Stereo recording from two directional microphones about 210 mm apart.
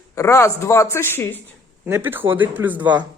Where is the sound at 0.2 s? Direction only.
15° left (ahead or behind).